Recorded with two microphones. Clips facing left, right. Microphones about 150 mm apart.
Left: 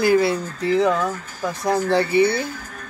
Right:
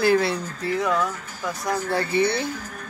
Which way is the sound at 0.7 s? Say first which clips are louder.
Left 5 dB; 25° left (ahead or behind).